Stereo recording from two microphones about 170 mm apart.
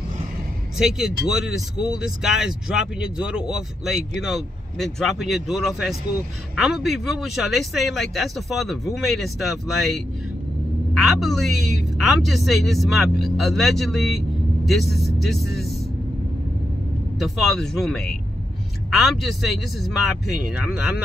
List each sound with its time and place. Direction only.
0.7 s speech: 5° right (ahead or behind)
11.0 s a woman's voice: centre (ahead or behind)
17.2 s speech: centre (ahead or behind)